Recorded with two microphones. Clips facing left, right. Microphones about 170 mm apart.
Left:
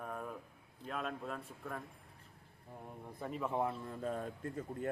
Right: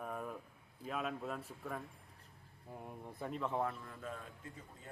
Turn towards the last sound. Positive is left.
turn(degrees=55)  # may be behind; listen again after turning